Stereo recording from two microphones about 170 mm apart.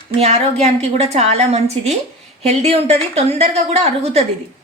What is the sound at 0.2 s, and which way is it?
A woman's voice, 40° right (ahead or behind).